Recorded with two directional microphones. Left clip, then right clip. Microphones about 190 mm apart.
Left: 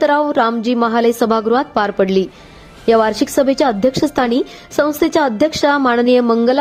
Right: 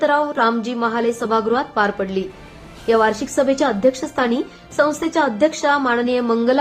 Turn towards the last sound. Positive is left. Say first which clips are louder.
# left 4 dB
turn(degrees=35)  # may be behind; listen again after turning